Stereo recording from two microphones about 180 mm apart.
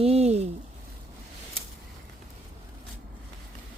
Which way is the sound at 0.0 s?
35° right (ahead or behind).